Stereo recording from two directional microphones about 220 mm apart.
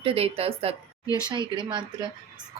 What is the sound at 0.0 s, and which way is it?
Speech, 25° right (ahead or behind).